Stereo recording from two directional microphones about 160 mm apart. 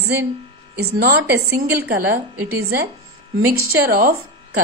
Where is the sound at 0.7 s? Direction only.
80° right.